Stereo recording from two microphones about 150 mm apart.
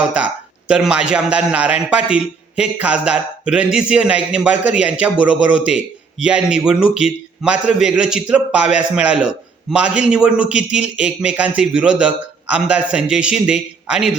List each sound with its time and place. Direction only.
0.7 s a man's voice: 5° right (ahead or behind)